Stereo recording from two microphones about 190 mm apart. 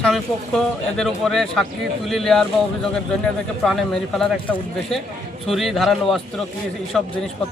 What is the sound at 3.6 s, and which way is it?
Speech, centre (ahead or behind).